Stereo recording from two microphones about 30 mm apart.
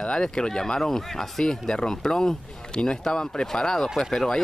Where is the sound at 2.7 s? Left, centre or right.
Left.